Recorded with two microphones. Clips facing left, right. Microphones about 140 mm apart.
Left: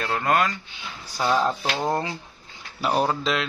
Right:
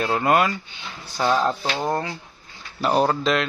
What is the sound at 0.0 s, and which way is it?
Speech, 10° right (ahead or behind).